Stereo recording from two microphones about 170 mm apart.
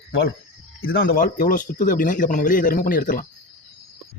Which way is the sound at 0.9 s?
60° left (ahead or behind).